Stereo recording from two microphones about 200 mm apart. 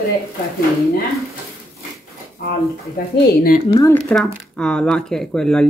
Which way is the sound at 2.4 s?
50° left (ahead or behind).